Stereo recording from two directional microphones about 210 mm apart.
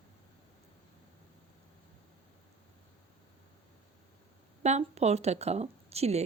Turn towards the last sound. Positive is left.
turn(degrees=-30)  # may be behind; listen again after turning